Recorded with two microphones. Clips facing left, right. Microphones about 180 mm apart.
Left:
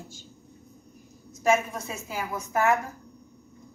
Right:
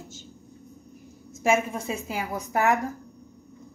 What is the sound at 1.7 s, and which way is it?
Speech, 35° right (ahead or behind).